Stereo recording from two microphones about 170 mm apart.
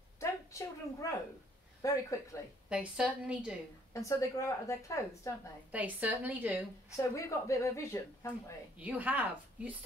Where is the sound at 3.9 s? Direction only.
20° left (ahead or behind).